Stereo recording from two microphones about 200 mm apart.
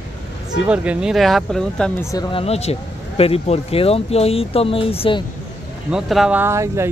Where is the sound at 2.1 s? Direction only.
25° left (ahead or behind).